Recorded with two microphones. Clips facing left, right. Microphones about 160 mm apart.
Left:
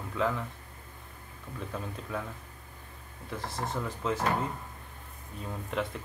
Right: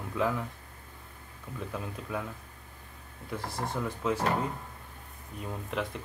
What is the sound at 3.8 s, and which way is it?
Speech, 5° right (ahead or behind).